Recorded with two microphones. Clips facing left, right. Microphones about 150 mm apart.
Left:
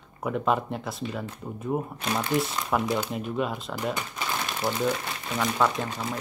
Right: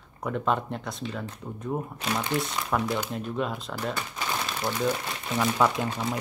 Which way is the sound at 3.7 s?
15° left (ahead or behind).